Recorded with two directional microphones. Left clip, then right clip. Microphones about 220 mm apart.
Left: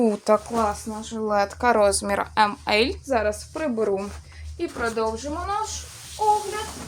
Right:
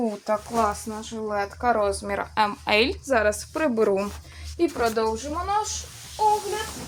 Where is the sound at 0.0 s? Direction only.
45° left (ahead or behind).